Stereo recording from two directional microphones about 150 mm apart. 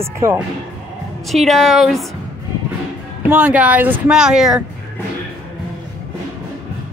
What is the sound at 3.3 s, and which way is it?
Speech, 10° right (ahead or behind).